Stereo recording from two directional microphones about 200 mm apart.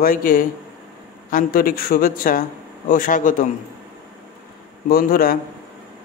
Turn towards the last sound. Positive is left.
turn(degrees=45)  # may be behind; listen again after turning